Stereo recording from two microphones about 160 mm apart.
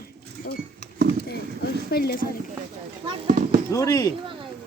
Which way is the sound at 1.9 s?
75° left (ahead or behind).